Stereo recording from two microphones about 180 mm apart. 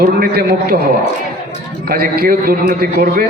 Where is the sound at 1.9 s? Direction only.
55° right (ahead or behind).